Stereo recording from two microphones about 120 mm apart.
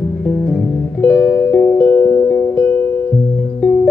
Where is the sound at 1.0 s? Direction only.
10° left (ahead or behind).